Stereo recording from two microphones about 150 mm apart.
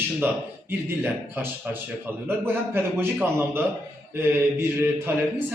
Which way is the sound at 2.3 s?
15° right (ahead or behind).